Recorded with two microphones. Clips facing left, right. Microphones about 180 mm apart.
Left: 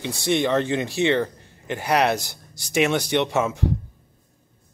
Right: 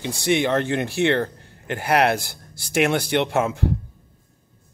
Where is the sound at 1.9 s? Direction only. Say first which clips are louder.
Right 2 dB; 55° right (ahead or behind).